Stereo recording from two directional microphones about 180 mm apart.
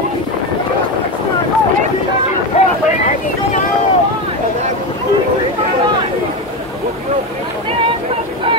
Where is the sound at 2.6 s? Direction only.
35° left (ahead or behind).